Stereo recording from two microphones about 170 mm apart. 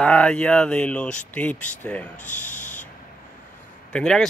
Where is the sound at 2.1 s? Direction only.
45° left (ahead or behind).